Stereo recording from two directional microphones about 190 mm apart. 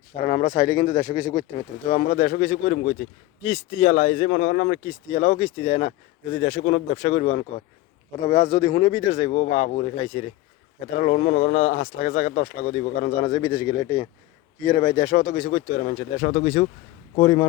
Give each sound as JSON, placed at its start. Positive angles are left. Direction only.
{"t": 0.2, "sound": "speech", "side_deg": 35}
{"t": 0.5, "sound": "speech", "side_deg": 20}
{"t": 4.9, "sound": "speech", "side_deg": 30}
{"t": 8.4, "sound": "speech", "side_deg": 20}
{"t": 9.1, "sound": "speech", "side_deg": 35}
{"t": 13.6, "sound": "speech", "side_deg": 20}